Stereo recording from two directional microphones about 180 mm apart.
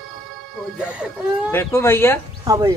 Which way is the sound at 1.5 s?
15° left (ahead or behind).